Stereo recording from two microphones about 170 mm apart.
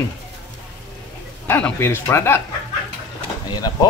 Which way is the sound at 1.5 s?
15° left (ahead or behind).